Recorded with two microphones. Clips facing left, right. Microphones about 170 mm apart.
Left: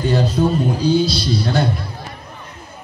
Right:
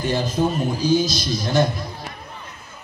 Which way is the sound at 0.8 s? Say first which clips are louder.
Left 2 dB; 35° left (ahead or behind).